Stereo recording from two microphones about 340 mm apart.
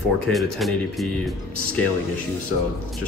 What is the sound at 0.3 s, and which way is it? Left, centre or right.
Speech, centre.